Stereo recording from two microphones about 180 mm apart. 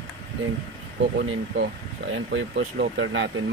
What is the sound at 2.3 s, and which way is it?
Speech, 80° right.